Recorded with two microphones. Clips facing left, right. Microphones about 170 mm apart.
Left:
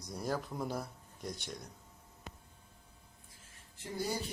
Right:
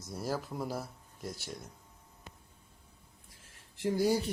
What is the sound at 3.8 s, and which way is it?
Speech, 90° right.